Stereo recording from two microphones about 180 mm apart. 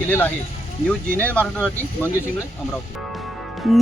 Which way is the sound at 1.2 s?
5° left (ahead or behind).